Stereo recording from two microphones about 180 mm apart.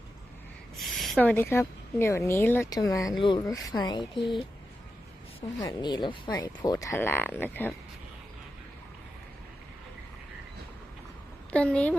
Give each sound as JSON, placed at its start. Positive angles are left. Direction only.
{"t": 0.8, "sound": "a woman's voice", "side_deg": 0}
{"t": 5.5, "sound": "speech", "side_deg": 20}
{"t": 11.5, "sound": "a woman's voice", "side_deg": 5}